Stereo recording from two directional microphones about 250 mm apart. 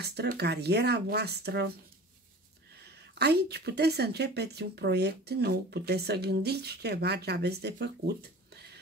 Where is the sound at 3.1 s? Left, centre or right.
Right.